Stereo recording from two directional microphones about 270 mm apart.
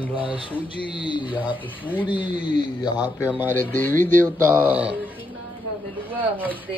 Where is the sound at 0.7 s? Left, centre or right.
Centre.